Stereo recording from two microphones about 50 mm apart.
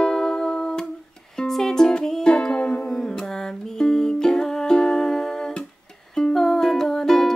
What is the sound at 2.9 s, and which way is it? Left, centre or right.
Music, centre.